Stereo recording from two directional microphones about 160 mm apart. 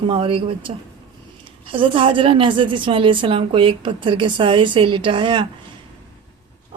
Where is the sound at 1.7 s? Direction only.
35° right (ahead or behind).